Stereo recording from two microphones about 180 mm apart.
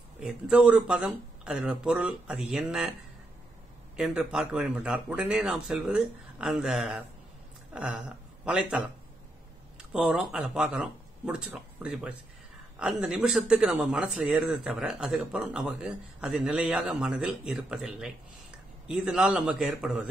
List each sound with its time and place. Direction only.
0.2 s a man's voice: 10° right (ahead or behind)
3.9 s a man's voice: 5° right (ahead or behind)
7.7 s a sound: 5° right (ahead or behind)
8.5 s a man's voice: 5° right (ahead or behind)